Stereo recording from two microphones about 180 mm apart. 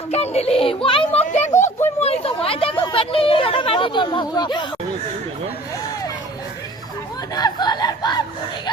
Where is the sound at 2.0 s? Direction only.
35° left (ahead or behind).